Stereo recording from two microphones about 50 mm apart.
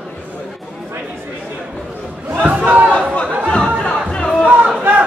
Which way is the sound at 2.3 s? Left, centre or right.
Right.